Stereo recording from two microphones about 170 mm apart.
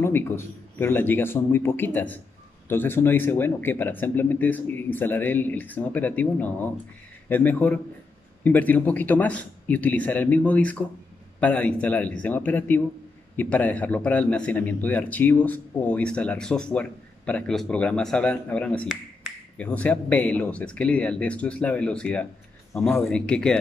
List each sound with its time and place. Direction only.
0.0 s a sound: 15° left (ahead or behind)
0.7 s speech: 10° left (ahead or behind)
18.9 s finger snapping: centre (ahead or behind)
19.6 s speech: 10° left (ahead or behind)